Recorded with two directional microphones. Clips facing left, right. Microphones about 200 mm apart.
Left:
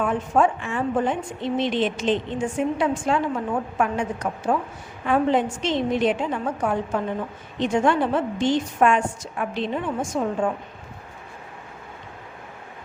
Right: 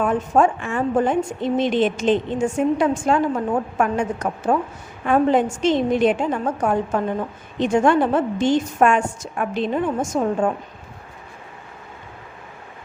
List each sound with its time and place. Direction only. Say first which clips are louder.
0.0 s a woman's voice: right 3 dB; 45° right (ahead or behind)